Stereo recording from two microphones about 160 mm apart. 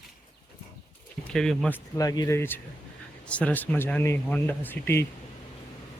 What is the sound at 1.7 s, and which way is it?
Speech, 20° left (ahead or behind).